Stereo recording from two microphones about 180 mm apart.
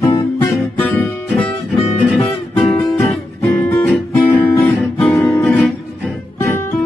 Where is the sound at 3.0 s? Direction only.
5° left (ahead or behind).